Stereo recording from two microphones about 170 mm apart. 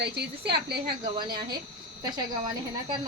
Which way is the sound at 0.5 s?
70° right (ahead or behind).